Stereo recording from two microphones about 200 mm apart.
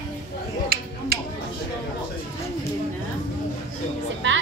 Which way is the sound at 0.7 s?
50° right (ahead or behind).